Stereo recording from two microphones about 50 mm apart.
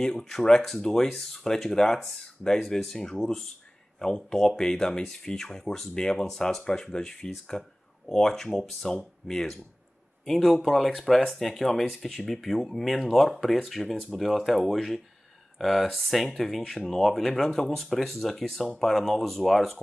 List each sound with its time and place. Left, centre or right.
0.0 s speech: centre